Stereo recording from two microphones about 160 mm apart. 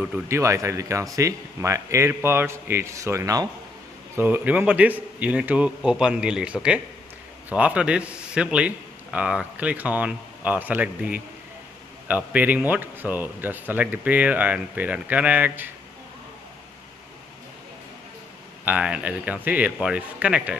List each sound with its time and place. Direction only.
0.3 s a man's voice: 20° right (ahead or behind)
18.7 s a man's voice: 5° right (ahead or behind)